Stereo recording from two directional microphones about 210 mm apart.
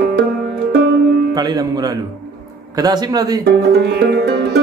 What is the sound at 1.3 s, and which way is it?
A man's voice, 20° right (ahead or behind).